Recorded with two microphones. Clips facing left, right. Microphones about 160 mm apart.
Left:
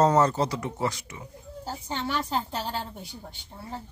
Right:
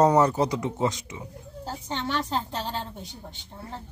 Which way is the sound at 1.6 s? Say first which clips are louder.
Right 1 dB; 5° left (ahead or behind).